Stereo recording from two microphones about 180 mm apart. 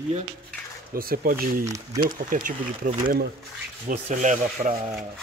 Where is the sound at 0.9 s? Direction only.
55° right (ahead or behind).